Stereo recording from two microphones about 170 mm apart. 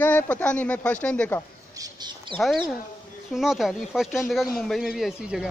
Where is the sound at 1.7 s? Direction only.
20° right (ahead or behind).